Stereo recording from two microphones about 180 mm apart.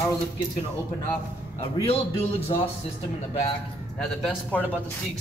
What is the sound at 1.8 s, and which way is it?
Speech, 35° left (ahead or behind).